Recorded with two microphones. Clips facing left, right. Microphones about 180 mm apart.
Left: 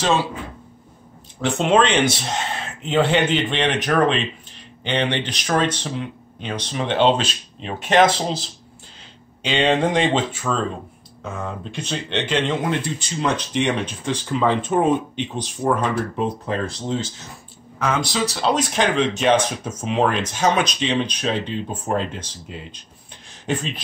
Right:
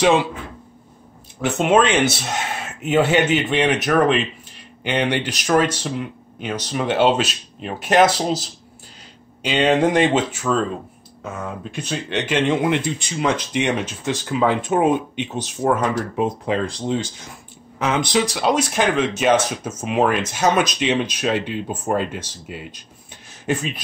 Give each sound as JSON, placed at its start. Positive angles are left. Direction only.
{"t": 0.0, "sound": "speech", "side_deg": -15}
{"t": 1.6, "sound": "speech", "side_deg": -5}
{"t": 9.5, "sound": "speech", "side_deg": -5}